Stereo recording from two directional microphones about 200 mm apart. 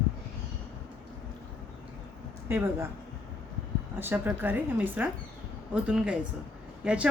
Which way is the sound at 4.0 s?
10° right (ahead or behind).